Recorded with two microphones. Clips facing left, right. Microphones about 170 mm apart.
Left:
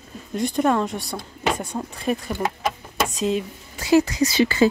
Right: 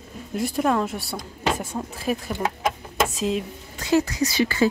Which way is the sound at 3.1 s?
Centre (ahead or behind).